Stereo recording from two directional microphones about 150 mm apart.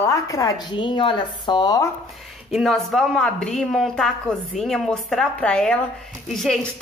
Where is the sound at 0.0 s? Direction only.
20° left (ahead or behind).